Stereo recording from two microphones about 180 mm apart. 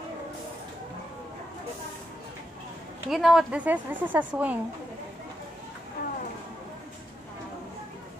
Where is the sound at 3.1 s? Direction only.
Centre (ahead or behind).